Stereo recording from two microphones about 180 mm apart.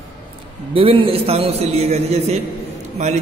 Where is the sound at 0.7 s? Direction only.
30° right (ahead or behind).